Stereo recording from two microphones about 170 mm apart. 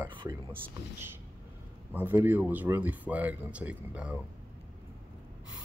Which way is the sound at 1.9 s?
10° right (ahead or behind).